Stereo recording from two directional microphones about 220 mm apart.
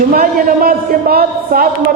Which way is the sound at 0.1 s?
40° right (ahead or behind).